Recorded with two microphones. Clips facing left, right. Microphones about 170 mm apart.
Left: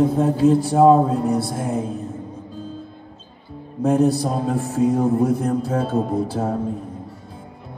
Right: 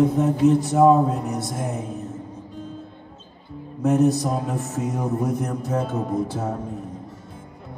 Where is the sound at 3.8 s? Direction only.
30° left (ahead or behind).